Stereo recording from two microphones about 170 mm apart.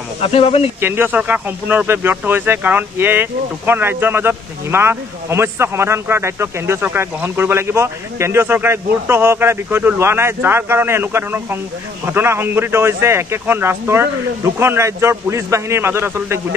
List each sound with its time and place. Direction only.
0.2 s speech: 35° left (ahead or behind)
0.7 s speech: 15° right (ahead or behind)